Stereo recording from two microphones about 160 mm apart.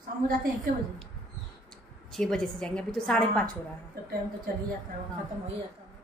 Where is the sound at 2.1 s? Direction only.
Centre (ahead or behind).